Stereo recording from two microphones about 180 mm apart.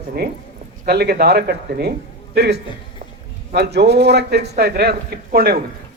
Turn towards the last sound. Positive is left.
turn(degrees=-60)  # may be behind; listen again after turning